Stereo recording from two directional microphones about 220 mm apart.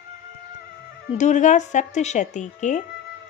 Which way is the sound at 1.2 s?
35° left (ahead or behind).